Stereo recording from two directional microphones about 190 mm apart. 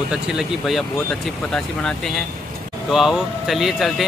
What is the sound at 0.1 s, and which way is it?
Speech, 5° right (ahead or behind).